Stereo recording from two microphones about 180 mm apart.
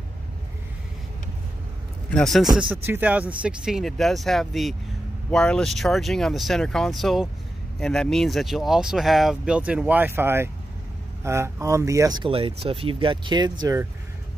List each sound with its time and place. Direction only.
2.0 s a man's voice: 5° left (ahead or behind)
2.7 s speech: 10° right (ahead or behind)